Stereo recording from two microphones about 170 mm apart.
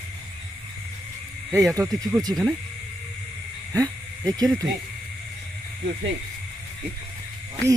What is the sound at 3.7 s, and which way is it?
Speech, 20° right (ahead or behind).